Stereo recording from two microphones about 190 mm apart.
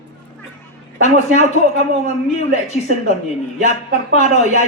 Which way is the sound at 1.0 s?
35° left (ahead or behind).